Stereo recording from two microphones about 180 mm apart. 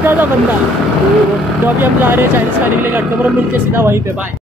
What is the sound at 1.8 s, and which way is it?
Speech, 10° right (ahead or behind).